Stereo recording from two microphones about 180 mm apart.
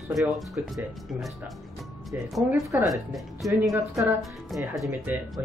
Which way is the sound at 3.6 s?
15° right (ahead or behind).